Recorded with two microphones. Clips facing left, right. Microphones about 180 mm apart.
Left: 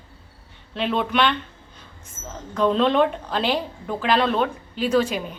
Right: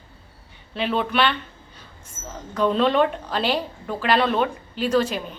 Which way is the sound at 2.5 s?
5° right (ahead or behind).